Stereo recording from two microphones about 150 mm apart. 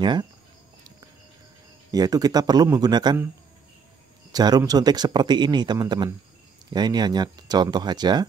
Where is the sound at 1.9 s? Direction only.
25° right (ahead or behind).